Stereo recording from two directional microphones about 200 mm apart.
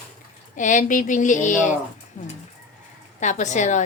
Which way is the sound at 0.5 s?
40° left (ahead or behind).